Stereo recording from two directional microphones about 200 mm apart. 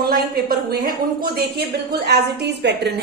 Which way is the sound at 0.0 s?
50° right (ahead or behind).